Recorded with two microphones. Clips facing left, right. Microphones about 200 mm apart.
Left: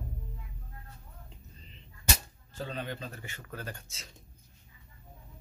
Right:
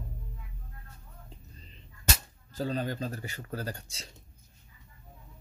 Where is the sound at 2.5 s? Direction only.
40° right (ahead or behind).